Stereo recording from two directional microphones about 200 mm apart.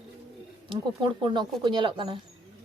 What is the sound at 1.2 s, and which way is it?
Speech, 20° right (ahead or behind).